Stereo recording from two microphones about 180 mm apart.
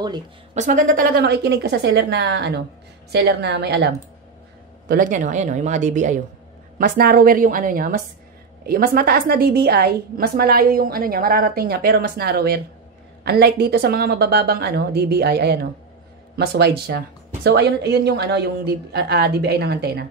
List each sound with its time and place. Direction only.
0.6 s a woman's voice: 45° right (ahead or behind); by 3.9 s 65° right (ahead or behind)
4.8 s speech: 50° right (ahead or behind)
6.8 s a woman's voice: 55° right (ahead or behind)